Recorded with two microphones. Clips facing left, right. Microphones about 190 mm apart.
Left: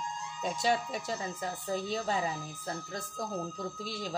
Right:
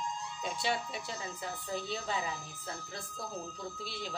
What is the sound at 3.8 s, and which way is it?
Speech, 40° left (ahead or behind).